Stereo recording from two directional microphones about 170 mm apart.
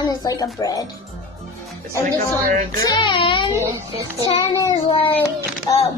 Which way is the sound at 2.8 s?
25° left (ahead or behind).